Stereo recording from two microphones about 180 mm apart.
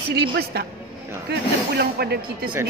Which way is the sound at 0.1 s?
60° right (ahead or behind).